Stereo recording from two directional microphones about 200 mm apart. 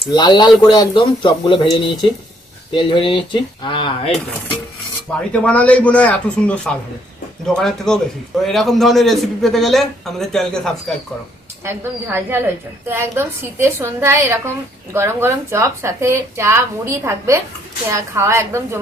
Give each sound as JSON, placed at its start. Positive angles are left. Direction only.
{"t": 0.1, "sound": "speech", "side_deg": 20}
{"t": 5.3, "sound": "a man's voice", "side_deg": 5}
{"t": 11.6, "sound": "speech", "side_deg": -10}